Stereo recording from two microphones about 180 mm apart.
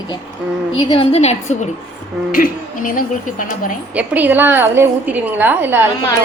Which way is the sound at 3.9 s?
10° right (ahead or behind).